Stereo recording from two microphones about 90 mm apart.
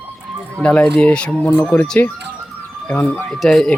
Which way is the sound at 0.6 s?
10° left (ahead or behind).